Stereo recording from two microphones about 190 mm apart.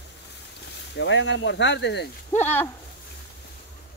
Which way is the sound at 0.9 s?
75° left (ahead or behind).